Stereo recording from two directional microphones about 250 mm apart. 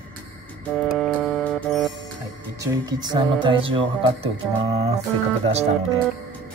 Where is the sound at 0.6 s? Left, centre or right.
Centre.